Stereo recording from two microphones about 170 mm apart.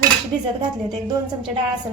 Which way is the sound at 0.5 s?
25° right (ahead or behind).